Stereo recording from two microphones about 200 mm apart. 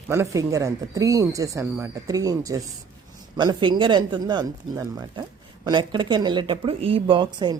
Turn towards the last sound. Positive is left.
turn(degrees=-20)  # may be behind; listen again after turning